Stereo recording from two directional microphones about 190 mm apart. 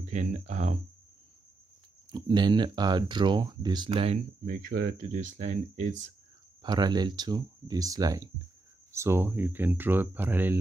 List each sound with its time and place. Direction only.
0.0 s speech: 40° right (ahead or behind)
2.0 s speech: 20° right (ahead or behind)
4.5 s speech: 50° right (ahead or behind)
6.6 s speech: 20° right (ahead or behind)